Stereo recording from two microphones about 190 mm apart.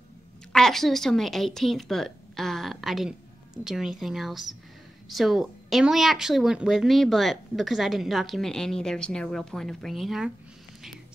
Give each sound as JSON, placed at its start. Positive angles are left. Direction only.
{"t": 0.5, "sound": "speech", "side_deg": 0}